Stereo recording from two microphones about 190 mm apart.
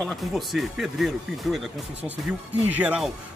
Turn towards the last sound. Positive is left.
turn(degrees=-5)  # may be behind; listen again after turning